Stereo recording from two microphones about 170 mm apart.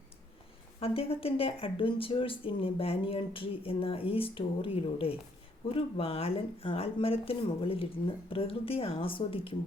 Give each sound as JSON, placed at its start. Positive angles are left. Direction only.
{"t": 0.8, "sound": "speech", "side_deg": 35}